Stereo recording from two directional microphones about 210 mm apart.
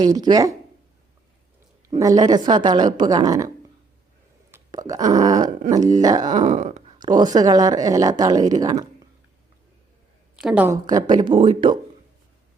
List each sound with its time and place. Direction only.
0.0 s speech: 20° right (ahead or behind)
1.9 s speech: 20° right (ahead or behind)
4.5 s a sound: 15° right (ahead or behind)
5.7 s speech: 20° right (ahead or behind)
6.4 s a sound: 35° right (ahead or behind)
7.0 s speech: 20° right (ahead or behind)
10.3 s a woman's voice: 5° right (ahead or behind)
10.8 s speech: 20° right (ahead or behind)